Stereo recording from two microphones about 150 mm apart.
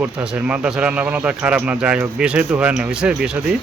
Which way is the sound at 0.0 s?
10° right (ahead or behind).